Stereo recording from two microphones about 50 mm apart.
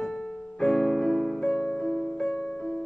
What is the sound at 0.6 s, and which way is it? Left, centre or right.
Music, centre.